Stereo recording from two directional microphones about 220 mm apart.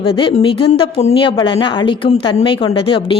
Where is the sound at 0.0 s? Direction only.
25° left (ahead or behind).